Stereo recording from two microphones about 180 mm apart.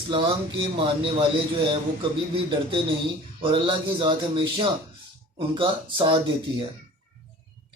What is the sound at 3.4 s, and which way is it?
Speech, 30° right (ahead or behind).